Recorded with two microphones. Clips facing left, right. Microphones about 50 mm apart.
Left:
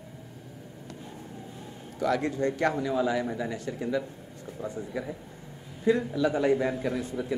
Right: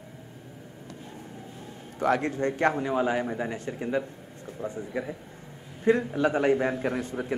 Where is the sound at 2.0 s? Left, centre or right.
Right.